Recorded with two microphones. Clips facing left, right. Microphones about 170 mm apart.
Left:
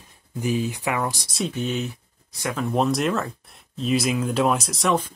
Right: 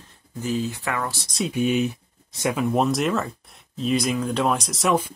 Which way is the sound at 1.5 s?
15° right (ahead or behind).